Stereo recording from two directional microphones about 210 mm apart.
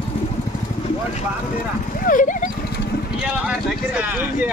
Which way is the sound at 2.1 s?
40° left (ahead or behind).